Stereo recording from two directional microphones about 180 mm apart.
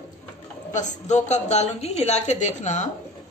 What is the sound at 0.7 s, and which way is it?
A woman's voice, 40° left (ahead or behind).